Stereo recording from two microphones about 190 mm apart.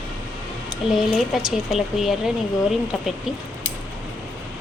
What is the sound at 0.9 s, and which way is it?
Speech, centre (ahead or behind).